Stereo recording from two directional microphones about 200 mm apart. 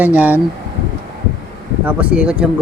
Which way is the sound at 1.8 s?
5° right (ahead or behind).